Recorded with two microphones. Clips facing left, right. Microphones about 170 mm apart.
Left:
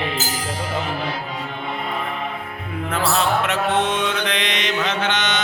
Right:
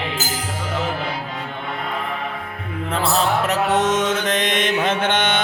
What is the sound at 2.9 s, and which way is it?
Mantra, 35° right (ahead or behind).